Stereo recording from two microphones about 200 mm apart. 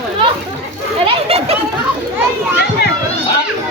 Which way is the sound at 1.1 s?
30° right (ahead or behind).